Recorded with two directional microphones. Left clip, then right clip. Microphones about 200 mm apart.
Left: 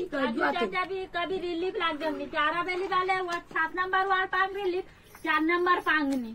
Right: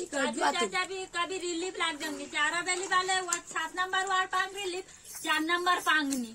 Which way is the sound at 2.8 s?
30° right (ahead or behind).